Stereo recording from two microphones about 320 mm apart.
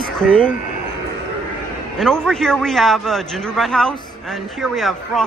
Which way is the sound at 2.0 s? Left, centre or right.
Centre.